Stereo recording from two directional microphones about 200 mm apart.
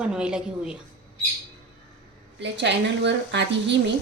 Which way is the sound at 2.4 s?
60° right (ahead or behind).